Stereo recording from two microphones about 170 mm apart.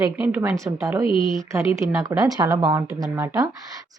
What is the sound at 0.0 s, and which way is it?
A woman's voice, 15° right (ahead or behind).